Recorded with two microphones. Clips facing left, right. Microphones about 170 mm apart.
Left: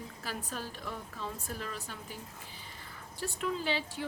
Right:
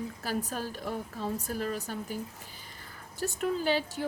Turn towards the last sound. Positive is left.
turn(degrees=-45)  # may be behind; listen again after turning